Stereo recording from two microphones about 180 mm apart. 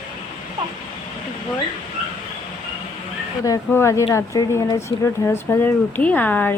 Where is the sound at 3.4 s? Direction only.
15° left (ahead or behind).